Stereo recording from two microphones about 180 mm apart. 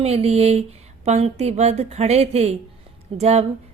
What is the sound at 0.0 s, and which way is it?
A woman's voice, 35° right (ahead or behind).